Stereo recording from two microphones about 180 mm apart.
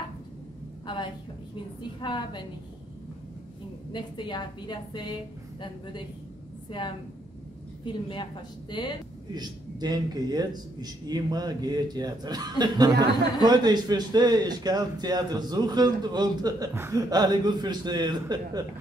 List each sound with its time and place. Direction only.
0.8 s a sound: 25° left (ahead or behind)
1.8 s a woman's voice: 25° left (ahead or behind)
3.9 s a woman's voice: 25° left (ahead or behind)
6.7 s a woman's voice: 25° left (ahead or behind)
9.3 s a man's voice: 20° right (ahead or behind)